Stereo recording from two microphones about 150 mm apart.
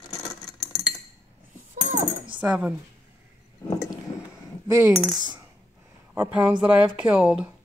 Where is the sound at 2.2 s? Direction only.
35° right (ahead or behind).